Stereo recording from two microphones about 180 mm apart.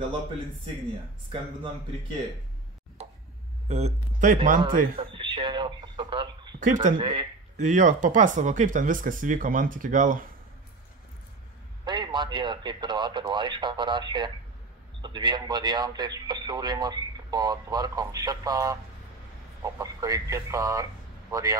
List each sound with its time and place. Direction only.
3.6 s speech: 35° right (ahead or behind)
4.6 s speech: 25° right (ahead or behind)
6.6 s speech: 45° right (ahead or behind)
7.0 s speech: 25° right (ahead or behind)
7.5 s speech: 45° right (ahead or behind)
11.8 s speech: 25° right (ahead or behind)